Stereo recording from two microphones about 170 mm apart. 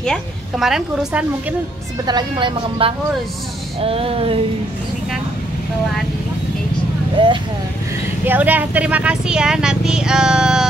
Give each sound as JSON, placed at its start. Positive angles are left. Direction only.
{"t": 0.0, "sound": "a woman's voice", "side_deg": 0}
{"t": 2.0, "sound": "speech", "side_deg": -25}
{"t": 3.8, "sound": "a sound", "side_deg": -35}
{"t": 7.2, "sound": "speech", "side_deg": -30}
{"t": 8.3, "sound": "speech", "side_deg": -10}